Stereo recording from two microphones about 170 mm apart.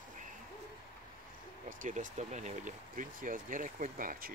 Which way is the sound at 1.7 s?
50° right (ahead or behind).